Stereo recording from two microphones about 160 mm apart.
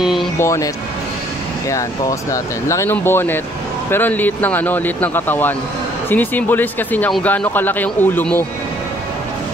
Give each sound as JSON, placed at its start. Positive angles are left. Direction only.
{"t": 0.0, "sound": "vehicle", "side_deg": 0}
{"t": 0.4, "sound": "speech", "side_deg": 20}
{"t": 1.7, "sound": "speech", "side_deg": 20}